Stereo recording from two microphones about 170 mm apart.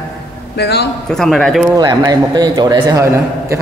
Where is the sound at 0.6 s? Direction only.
75° left (ahead or behind).